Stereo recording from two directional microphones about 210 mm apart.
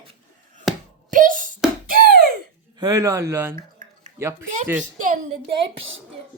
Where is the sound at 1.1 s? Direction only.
40° right (ahead or behind).